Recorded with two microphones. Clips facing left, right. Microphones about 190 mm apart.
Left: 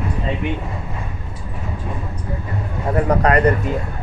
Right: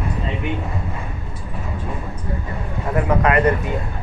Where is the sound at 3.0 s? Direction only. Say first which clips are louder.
Left 1 dB; 40° left (ahead or behind).